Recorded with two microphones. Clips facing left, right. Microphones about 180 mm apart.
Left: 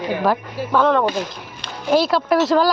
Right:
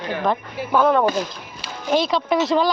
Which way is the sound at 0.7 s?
10° right (ahead or behind).